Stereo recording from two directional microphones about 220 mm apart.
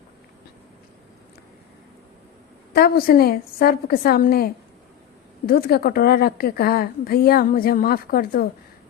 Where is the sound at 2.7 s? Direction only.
45° left (ahead or behind).